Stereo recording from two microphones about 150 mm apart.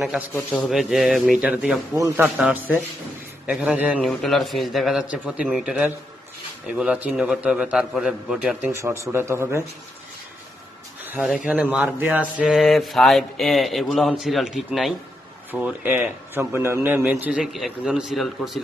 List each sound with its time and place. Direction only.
0.7 s speech: centre (ahead or behind)
2.0 s a man's voice: 15° right (ahead or behind)
4.0 s a man's voice: centre (ahead or behind)
8.7 s a man's voice: 15° right (ahead or behind)
11.4 s a man's voice: 5° right (ahead or behind)